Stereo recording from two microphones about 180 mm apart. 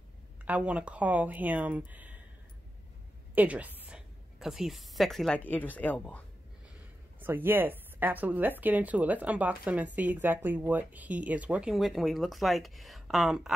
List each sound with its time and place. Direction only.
0.5 s speech: 5° right (ahead or behind)
3.3 s a woman's voice: 10° right (ahead or behind); by 6.2 s 10° left (ahead or behind)
7.2 s speech: 10° right (ahead or behind)